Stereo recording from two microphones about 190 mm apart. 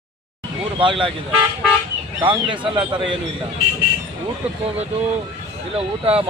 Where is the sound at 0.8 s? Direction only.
25° right (ahead or behind).